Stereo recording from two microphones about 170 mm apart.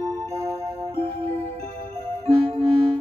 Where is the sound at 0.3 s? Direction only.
20° right (ahead or behind).